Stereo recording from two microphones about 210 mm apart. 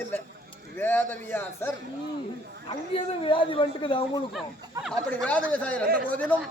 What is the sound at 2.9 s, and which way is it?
A man's voice, 25° left (ahead or behind).